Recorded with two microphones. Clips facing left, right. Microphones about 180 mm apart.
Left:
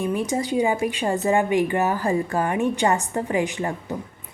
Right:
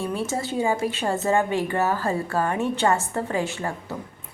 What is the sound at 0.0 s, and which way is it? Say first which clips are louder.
A woman's voice: left 3 dB; 15° left (ahead or behind).